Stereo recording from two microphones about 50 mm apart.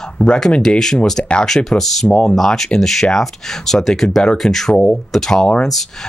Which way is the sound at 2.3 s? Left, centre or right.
Centre.